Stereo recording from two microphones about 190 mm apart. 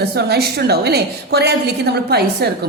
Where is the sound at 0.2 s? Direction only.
60° right (ahead or behind).